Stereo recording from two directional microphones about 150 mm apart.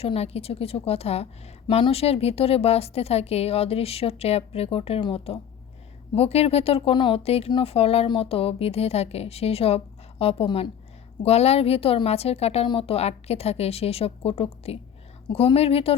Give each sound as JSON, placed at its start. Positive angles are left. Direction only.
{"t": 0.0, "sound": "a woman's voice", "side_deg": 40}